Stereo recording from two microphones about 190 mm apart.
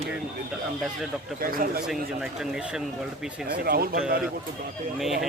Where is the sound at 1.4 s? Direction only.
50° right (ahead or behind).